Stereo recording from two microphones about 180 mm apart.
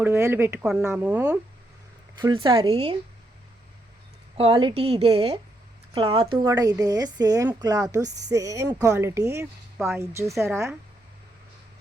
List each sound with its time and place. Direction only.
0.0 s speech: 15° right (ahead or behind)
2.2 s a woman's voice: 25° right (ahead or behind)
4.4 s a woman's voice: 30° right (ahead or behind); by 10.8 s 15° right (ahead or behind)